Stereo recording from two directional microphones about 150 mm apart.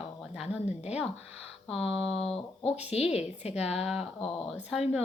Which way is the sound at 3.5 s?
5° right (ahead or behind).